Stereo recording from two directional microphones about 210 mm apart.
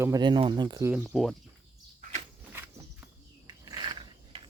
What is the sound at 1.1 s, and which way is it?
Speech, centre (ahead or behind).